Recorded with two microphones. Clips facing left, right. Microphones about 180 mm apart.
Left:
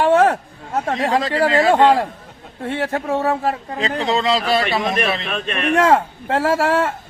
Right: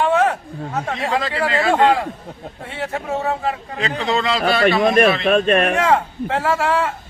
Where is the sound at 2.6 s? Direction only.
45° left (ahead or behind).